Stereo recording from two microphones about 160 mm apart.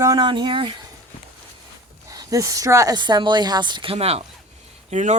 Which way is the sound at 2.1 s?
20° right (ahead or behind).